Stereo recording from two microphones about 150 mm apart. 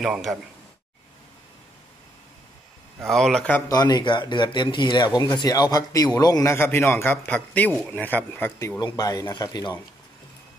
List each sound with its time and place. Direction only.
0.0 s speech: centre (ahead or behind)
3.0 s speech: centre (ahead or behind)
3.6 s speech: 25° left (ahead or behind)